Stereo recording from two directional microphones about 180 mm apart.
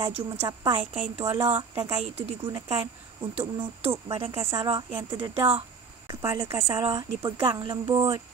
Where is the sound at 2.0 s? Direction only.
35° right (ahead or behind).